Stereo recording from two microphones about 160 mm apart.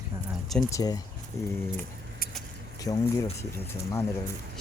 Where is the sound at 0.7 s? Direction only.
25° left (ahead or behind).